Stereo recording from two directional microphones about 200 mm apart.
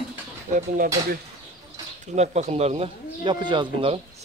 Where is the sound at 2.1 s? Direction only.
35° right (ahead or behind).